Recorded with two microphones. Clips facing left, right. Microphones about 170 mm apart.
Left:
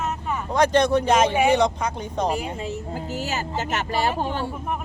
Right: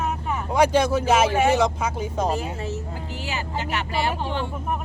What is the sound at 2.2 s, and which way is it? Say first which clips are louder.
Speech: even; 15° left (ahead or behind).